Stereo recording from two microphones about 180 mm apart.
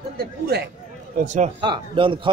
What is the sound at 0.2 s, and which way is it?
Speech, 65° right (ahead or behind).